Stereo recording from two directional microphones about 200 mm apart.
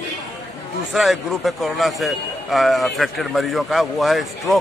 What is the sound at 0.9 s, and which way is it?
Speech, centre (ahead or behind).